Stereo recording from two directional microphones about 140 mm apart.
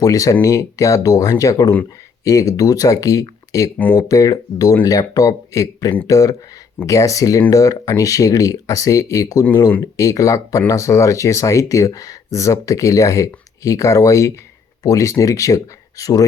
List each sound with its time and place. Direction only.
0.0 s speech: 25° left (ahead or behind)